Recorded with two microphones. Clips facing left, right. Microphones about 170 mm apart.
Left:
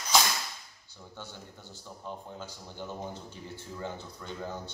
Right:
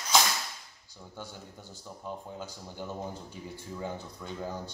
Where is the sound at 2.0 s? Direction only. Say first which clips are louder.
Right 2 dB; 10° right (ahead or behind).